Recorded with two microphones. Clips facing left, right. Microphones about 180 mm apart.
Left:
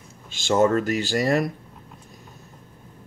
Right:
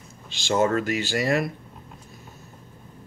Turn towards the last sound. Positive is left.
turn(degrees=40)  # may be behind; listen again after turning